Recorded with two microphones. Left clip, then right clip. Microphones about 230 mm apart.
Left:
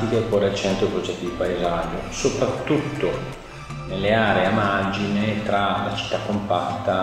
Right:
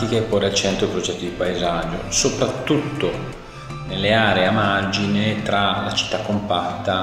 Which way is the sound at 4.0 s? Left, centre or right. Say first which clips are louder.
Right 2 dB; right.